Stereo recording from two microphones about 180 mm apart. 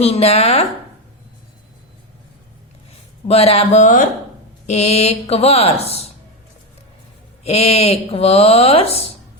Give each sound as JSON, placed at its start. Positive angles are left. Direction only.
{"t": 0.0, "sound": "speech", "side_deg": 35}
{"t": 3.2, "sound": "speech", "side_deg": 35}
{"t": 7.4, "sound": "speech", "side_deg": 35}